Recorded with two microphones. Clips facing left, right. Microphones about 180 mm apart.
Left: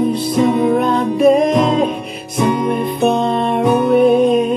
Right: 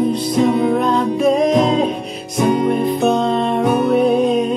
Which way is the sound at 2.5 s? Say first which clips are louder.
Right 2 dB; 30° right (ahead or behind).